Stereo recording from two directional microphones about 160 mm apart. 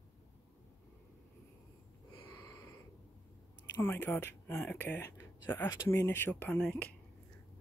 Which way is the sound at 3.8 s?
10° left (ahead or behind).